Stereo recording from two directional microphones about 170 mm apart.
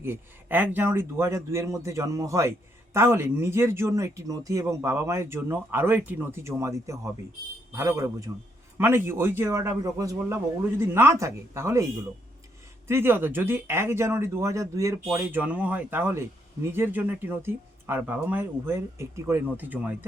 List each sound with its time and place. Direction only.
0.0 s speech: 10° right (ahead or behind)
12.9 s speech: 15° right (ahead or behind)